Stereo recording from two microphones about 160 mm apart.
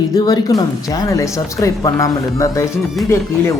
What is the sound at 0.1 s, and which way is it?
Speech, 25° left (ahead or behind).